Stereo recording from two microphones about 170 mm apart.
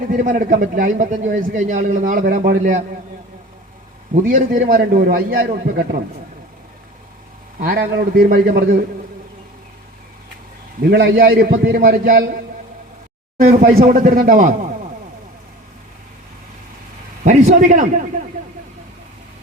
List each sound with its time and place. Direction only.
0.1 s speech: 55° right (ahead or behind)
4.1 s a man's voice: 55° right (ahead or behind)
7.6 s a man's voice: 65° right (ahead or behind)
10.8 s a man's voice: 70° right (ahead or behind)
13.4 s speech: 40° right (ahead or behind)
13.7 s speech: 50° right (ahead or behind)
17.2 s speech: 50° right (ahead or behind)